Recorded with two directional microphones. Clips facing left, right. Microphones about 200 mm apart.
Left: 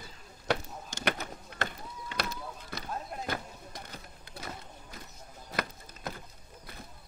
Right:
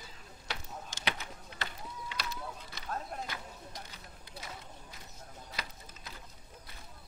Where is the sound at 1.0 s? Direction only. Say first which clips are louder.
Left 7 dB; 50° left (ahead or behind).